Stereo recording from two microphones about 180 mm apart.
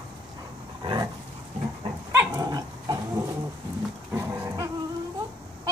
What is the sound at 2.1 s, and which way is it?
Dog, 15° right (ahead or behind).